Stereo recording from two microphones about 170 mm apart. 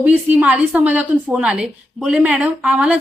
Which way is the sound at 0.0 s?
10° right (ahead or behind).